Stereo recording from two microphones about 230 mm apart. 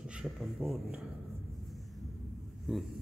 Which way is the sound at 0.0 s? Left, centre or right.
Centre.